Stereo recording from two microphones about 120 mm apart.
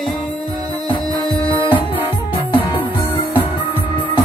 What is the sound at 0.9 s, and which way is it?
Music, 35° left (ahead or behind).